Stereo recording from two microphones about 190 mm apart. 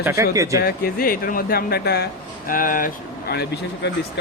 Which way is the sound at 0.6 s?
50° left (ahead or behind).